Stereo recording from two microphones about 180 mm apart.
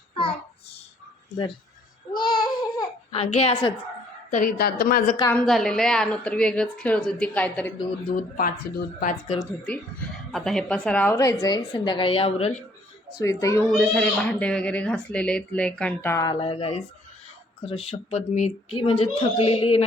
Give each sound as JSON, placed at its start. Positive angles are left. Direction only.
{"t": 2.1, "sound": "babbling", "side_deg": 25}
{"t": 4.3, "sound": "a woman's voice", "side_deg": 50}
{"t": 5.3, "sound": "speech", "side_deg": 0}
{"t": 8.1, "sound": "speech", "side_deg": 55}
{"t": 10.3, "sound": "a woman's voice", "side_deg": 0}
{"t": 13.1, "sound": "a child's voice", "side_deg": 15}
{"t": 13.7, "sound": "speech", "side_deg": 5}
{"t": 16.3, "sound": "a woman's voice", "side_deg": 30}